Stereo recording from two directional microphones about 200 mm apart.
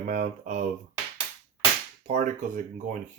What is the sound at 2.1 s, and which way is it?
Speech, 35° right (ahead or behind).